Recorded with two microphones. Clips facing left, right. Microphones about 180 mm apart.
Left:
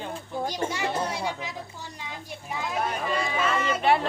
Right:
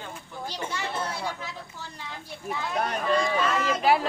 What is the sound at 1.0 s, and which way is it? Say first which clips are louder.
Speech: left 2 dB; 15° left (ahead or behind).